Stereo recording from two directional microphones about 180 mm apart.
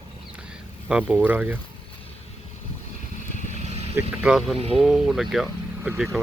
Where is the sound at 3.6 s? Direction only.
35° right (ahead or behind).